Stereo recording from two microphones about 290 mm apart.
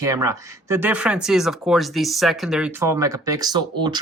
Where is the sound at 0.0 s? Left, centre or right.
Centre.